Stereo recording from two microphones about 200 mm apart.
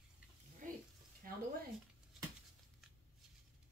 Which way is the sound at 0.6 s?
40° right (ahead or behind).